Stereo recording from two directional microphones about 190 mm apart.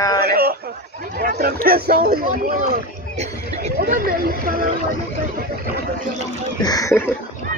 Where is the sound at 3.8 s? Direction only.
50° right (ahead or behind).